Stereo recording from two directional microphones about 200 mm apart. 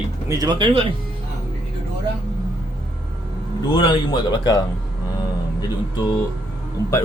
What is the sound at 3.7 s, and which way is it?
Speech, 25° left (ahead or behind).